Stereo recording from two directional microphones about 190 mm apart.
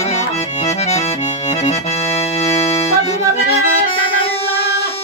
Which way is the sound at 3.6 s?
30° left (ahead or behind).